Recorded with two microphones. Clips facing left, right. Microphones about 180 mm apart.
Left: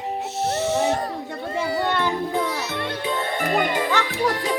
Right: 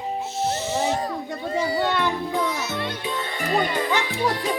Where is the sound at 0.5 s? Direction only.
70° left (ahead or behind).